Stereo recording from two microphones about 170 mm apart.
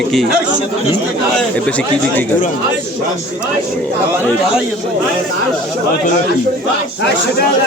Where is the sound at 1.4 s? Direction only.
5° left (ahead or behind).